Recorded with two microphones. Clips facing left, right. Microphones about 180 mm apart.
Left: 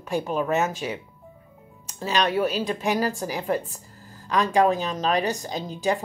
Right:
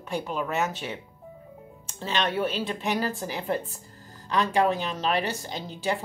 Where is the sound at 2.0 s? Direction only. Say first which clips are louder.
Left 4 dB; 25° right (ahead or behind).